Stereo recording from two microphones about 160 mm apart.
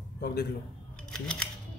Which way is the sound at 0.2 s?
80° left.